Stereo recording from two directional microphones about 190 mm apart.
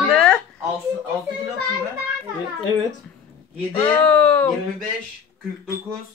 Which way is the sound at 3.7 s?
10° left (ahead or behind).